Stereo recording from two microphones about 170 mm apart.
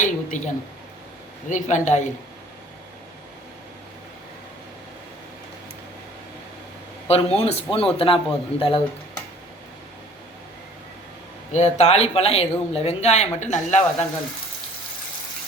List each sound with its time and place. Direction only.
0.0 s speech: 45° left (ahead or behind)
1.5 s speech: 45° left (ahead or behind)
7.1 s speech: 35° left (ahead or behind)
11.5 s speech: 40° left (ahead or behind)